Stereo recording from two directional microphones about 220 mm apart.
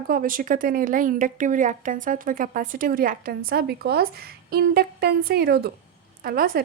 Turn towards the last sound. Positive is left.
turn(degrees=-40)  # may be behind; listen again after turning